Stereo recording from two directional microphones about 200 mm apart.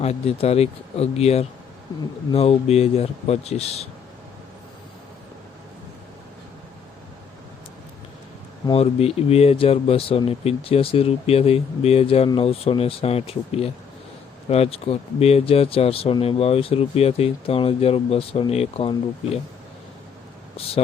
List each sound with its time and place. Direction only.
0.0 s speech: 30° left (ahead or behind)
8.6 s speech: 30° left (ahead or behind)
20.8 s speech: 35° left (ahead or behind)